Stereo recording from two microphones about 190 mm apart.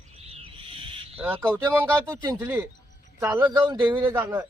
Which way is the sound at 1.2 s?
10° right (ahead or behind).